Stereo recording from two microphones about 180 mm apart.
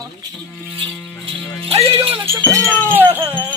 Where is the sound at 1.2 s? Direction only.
30° right (ahead or behind).